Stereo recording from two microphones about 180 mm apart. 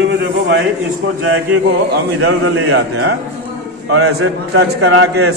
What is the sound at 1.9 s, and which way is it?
A man's voice, 90° right.